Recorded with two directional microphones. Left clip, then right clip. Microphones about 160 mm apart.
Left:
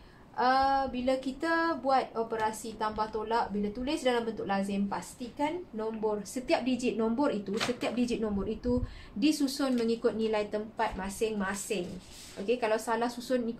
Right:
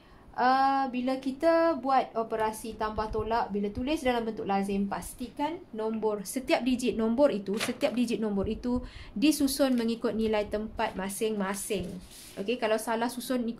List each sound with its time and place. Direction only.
0.4 s a woman's voice: 50° right (ahead or behind); by 13.4 s 65° right (ahead or behind)